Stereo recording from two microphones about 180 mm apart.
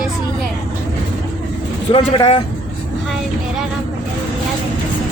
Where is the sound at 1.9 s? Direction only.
30° left (ahead or behind).